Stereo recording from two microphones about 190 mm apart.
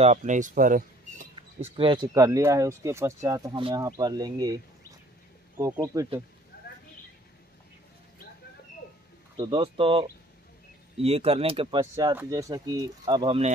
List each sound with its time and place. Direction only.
0.0 s speech: 40° right (ahead or behind)
1.8 s speech: 25° right (ahead or behind)
5.6 s speech: 15° right (ahead or behind)
6.5 s a sound: 55° left (ahead or behind)
9.4 s speech: 25° right (ahead or behind)